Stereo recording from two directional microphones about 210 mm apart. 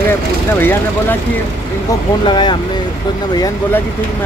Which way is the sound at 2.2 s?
20° left (ahead or behind).